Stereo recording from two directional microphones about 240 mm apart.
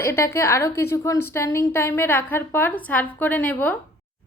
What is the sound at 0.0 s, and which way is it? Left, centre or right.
A woman's voice, centre.